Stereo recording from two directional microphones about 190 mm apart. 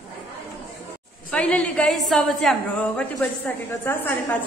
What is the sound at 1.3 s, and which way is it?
A woman's voice, 5° left (ahead or behind).